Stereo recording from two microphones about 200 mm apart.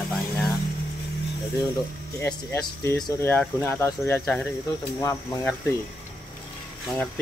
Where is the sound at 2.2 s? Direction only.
10° left (ahead or behind).